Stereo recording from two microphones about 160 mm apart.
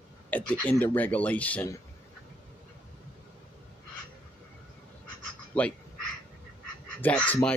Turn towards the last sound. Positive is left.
turn(degrees=10)  # may be behind; listen again after turning